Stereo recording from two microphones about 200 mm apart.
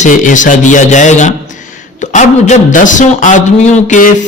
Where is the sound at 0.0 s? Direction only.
40° left (ahead or behind).